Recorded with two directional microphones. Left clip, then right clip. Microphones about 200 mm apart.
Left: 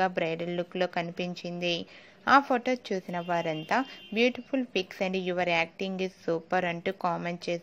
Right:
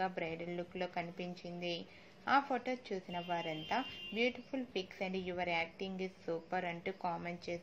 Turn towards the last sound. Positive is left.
turn(degrees=45)  # may be behind; listen again after turning